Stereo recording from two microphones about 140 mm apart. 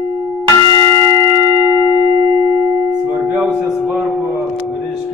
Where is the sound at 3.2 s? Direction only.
5° right (ahead or behind).